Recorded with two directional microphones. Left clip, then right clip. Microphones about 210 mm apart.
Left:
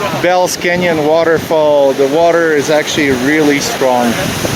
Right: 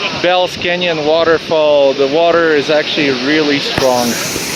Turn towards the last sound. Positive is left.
turn(degrees=15)  # may be behind; listen again after turning